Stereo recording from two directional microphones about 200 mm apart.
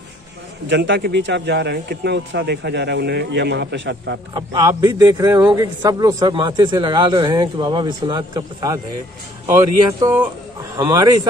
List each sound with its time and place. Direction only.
0.7 s speech: 65° right (ahead or behind)
4.3 s a man's voice: 20° right (ahead or behind)